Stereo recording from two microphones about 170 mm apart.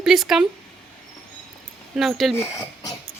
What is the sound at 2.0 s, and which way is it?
Speech, centre (ahead or behind).